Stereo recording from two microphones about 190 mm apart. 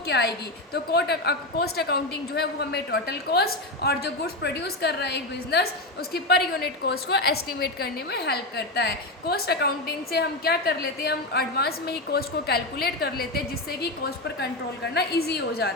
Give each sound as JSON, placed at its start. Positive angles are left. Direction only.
{"t": 0.1, "sound": "a woman's voice", "side_deg": 60}
{"t": 14.9, "sound": "a woman's voice", "side_deg": 60}